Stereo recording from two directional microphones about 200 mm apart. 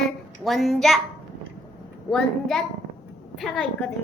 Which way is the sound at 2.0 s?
Centre (ahead or behind).